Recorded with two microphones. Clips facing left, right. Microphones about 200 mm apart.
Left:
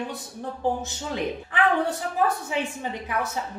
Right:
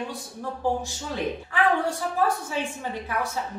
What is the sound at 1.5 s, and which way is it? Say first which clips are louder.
A woman's voice: left 1 dB; 20° left (ahead or behind).